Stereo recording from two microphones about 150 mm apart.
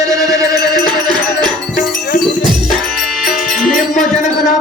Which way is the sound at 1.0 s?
Centre (ahead or behind).